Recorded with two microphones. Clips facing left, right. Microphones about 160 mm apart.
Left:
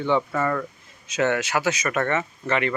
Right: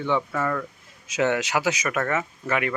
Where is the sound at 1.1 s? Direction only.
10° right (ahead or behind).